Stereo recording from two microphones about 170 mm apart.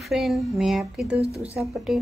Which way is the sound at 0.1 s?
Centre (ahead or behind).